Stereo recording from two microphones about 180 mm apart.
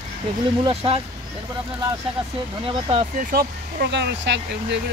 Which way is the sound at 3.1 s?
60° right (ahead or behind).